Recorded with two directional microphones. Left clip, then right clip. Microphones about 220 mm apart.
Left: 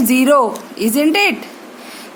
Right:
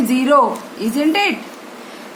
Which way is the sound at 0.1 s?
50° left (ahead or behind).